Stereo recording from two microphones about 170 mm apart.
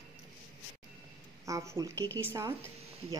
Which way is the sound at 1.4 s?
20° right (ahead or behind).